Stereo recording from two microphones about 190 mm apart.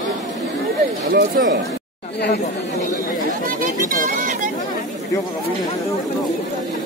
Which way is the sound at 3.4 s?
45° right (ahead or behind).